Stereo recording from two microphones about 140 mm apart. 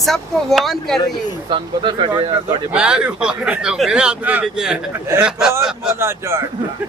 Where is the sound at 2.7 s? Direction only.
5° right (ahead or behind).